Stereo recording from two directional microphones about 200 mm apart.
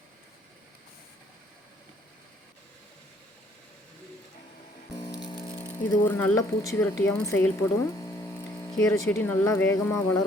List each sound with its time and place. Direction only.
4.9 s music: 20° left (ahead or behind)
5.5 s a woman's voice: 10° left (ahead or behind)